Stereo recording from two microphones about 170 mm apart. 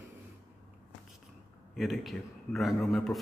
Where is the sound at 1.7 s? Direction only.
Centre (ahead or behind).